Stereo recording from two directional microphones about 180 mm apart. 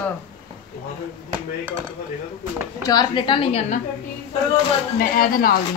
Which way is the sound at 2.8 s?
25° left (ahead or behind).